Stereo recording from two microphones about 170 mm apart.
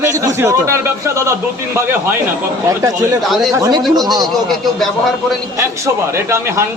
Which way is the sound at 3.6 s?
20° right (ahead or behind).